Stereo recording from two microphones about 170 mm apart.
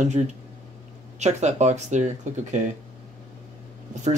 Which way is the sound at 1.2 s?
40° right (ahead or behind).